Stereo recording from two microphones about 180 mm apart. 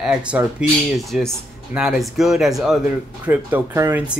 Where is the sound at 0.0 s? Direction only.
5° right (ahead or behind).